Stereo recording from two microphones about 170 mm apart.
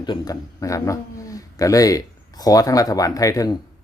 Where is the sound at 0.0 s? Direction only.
25° left (ahead or behind).